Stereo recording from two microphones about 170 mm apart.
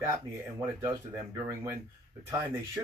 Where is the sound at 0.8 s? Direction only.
15° right (ahead or behind).